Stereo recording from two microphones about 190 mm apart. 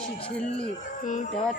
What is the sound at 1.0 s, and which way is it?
Speech, 40° left (ahead or behind).